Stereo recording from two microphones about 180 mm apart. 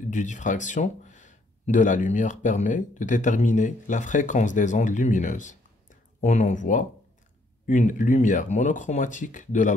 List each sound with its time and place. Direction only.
0.1 s speech: 45° left (ahead or behind)